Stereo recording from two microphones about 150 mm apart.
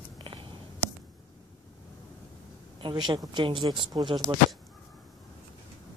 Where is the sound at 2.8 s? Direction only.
30° right (ahead or behind).